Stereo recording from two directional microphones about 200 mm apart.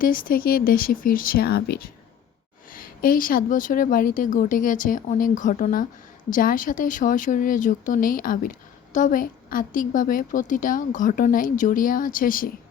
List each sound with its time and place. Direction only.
0.0 s speech: 45° left (ahead or behind)